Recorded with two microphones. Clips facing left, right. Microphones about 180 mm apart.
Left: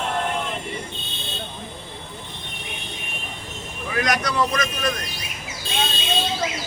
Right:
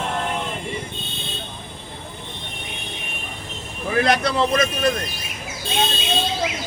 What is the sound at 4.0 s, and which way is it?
A man's voice, 30° right (ahead or behind).